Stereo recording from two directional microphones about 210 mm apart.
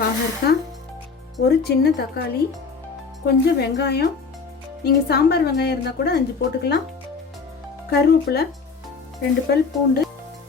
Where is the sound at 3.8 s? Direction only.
50° left (ahead or behind).